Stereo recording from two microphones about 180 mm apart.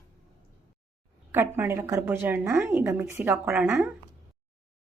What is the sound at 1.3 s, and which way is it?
A woman's voice, 10° right (ahead or behind).